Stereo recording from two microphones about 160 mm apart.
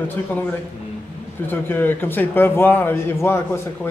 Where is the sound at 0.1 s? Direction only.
10° left (ahead or behind).